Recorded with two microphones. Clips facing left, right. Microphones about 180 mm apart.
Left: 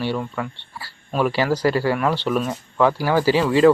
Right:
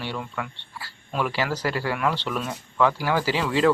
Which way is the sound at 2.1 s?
15° left (ahead or behind).